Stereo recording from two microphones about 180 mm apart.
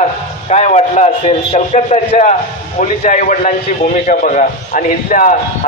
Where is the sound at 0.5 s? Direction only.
40° left (ahead or behind).